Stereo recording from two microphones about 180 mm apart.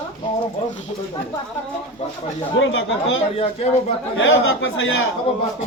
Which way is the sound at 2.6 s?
90° left.